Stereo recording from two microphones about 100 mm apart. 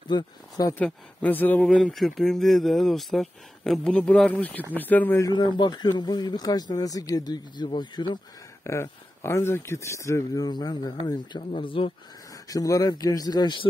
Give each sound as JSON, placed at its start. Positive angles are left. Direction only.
{"t": 0.1, "sound": "a man's voice", "side_deg": 40}
{"t": 0.7, "sound": "speech", "side_deg": 15}
{"t": 5.6, "sound": "speech", "side_deg": 45}
{"t": 8.6, "sound": "a man's voice", "side_deg": 30}
{"t": 12.4, "sound": "a man's voice", "side_deg": 35}